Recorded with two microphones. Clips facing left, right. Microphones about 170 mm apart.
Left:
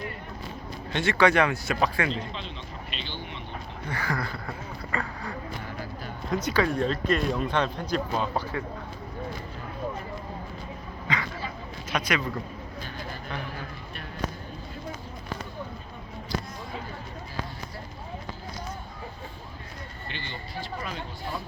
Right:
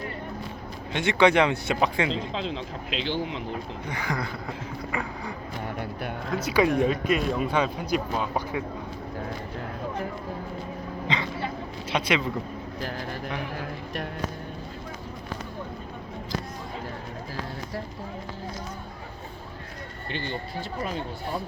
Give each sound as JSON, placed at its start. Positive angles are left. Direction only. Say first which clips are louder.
{"t": 0.9, "sound": "speech", "louder": "right 2 dB", "side_deg": -20}
{"t": 2.0, "sound": "speech", "louder": "right 4 dB", "side_deg": -90}
{"t": 3.8, "sound": "speech", "louder": "left 1 dB", "side_deg": -15}
{"t": 5.8, "sound": "music", "louder": "right 5 dB", "side_deg": -65}
{"t": 6.3, "sound": "speech", "louder": "right 3 dB", "side_deg": -5}
{"t": 11.1, "sound": "speech", "louder": "right 2 dB", "side_deg": -25}
{"t": 20.1, "sound": "speech", "louder": "right 8 dB", "side_deg": -45}